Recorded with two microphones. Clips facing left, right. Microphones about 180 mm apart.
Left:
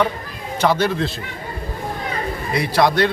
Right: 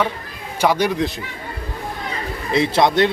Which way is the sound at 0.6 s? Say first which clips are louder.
Right 1 dB; 15° right (ahead or behind).